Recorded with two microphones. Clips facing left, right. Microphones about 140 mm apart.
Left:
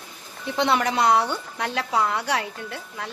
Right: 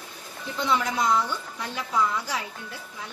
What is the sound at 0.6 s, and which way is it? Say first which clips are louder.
A woman's voice: left 4 dB; 70° left (ahead or behind).